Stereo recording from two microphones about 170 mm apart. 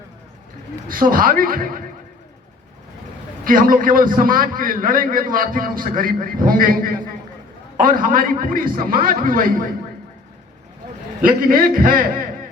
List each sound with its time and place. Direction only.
0.9 s a man's voice: 55° right (ahead or behind)
3.4 s a man's voice: 55° right (ahead or behind)
11.2 s a man's voice: 55° right (ahead or behind)